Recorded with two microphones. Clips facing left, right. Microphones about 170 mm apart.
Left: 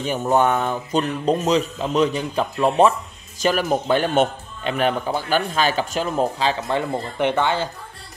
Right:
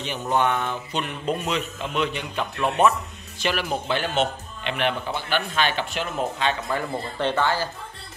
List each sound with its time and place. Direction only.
0.0 s speech: 45° left (ahead or behind)
6.7 s speech: 20° left (ahead or behind)